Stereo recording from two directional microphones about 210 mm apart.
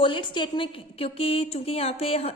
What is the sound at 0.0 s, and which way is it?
A woman's voice, 25° left (ahead or behind).